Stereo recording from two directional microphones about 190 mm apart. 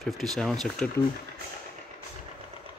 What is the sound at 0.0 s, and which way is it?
Speech, centre (ahead or behind).